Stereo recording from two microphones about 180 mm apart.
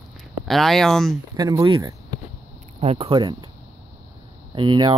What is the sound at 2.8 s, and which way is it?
Speech, 35° right (ahead or behind).